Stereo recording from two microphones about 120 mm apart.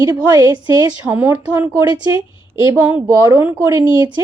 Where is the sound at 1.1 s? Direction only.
15° right (ahead or behind).